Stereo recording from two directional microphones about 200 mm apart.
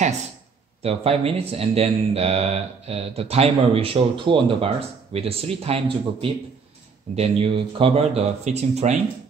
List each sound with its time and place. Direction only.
0.8 s speech: 30° right (ahead or behind)